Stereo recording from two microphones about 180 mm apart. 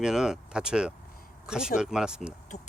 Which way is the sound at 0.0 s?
5° right (ahead or behind).